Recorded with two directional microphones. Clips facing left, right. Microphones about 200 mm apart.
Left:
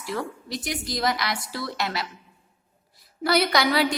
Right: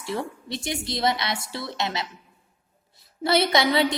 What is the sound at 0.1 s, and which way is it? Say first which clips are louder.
A woman's voice: right 1 dB; 25° right (ahead or behind).